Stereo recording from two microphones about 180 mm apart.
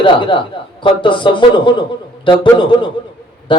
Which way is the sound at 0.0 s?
30° left (ahead or behind).